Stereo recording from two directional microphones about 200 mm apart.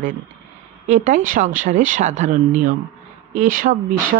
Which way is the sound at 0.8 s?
35° right (ahead or behind).